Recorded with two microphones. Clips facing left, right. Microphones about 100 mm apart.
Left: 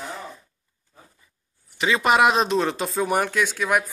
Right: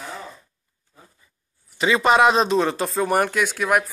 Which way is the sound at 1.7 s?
Centre (ahead or behind).